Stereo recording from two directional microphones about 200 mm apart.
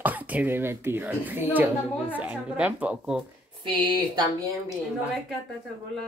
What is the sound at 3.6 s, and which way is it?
Speech, 25° right (ahead or behind).